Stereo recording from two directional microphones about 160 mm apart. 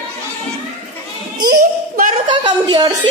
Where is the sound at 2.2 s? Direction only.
30° right (ahead or behind).